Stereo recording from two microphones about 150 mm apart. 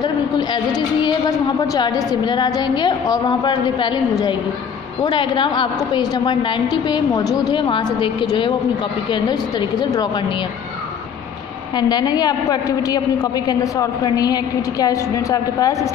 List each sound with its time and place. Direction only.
1.6 s a woman's voice: 25° left (ahead or behind)
11.7 s a woman's voice: 30° left (ahead or behind)